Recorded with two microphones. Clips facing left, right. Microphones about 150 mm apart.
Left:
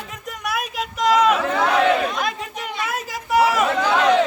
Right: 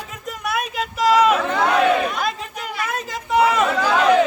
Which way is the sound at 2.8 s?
5° left (ahead or behind).